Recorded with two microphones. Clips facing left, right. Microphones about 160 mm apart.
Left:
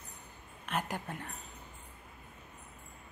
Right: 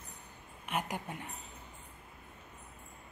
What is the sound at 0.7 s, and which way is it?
Speech, 10° right (ahead or behind).